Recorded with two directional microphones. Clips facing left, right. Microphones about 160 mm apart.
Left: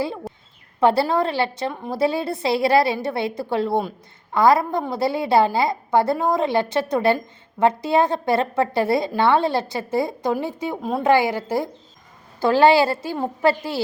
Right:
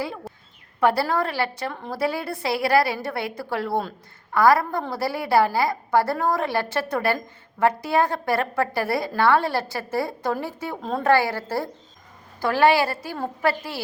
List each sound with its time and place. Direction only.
0.3 s a sound: centre (ahead or behind)
0.8 s a woman's voice: 25° left (ahead or behind)
12.4 s a woman's voice: 25° left (ahead or behind)